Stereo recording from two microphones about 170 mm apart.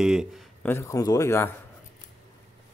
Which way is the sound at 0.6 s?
15° left (ahead or behind).